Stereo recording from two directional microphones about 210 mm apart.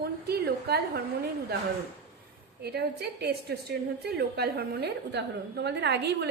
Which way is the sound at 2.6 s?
50° right (ahead or behind).